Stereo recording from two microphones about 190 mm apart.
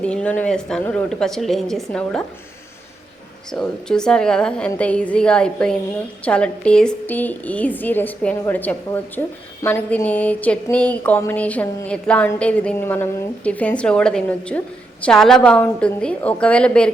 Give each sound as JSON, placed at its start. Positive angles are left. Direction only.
{"t": 0.0, "sound": "speech", "side_deg": 5}
{"t": 3.5, "sound": "speech", "side_deg": 5}
{"t": 6.2, "sound": "a sound", "side_deg": 5}
{"t": 15.0, "sound": "speech", "side_deg": 5}